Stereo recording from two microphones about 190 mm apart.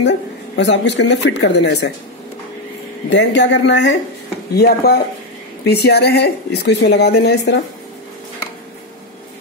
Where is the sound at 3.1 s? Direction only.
65° left (ahead or behind).